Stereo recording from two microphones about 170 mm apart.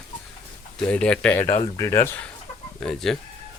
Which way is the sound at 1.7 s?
15° left (ahead or behind).